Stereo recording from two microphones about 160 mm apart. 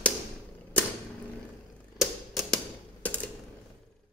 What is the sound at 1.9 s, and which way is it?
Typewriter, centre (ahead or behind).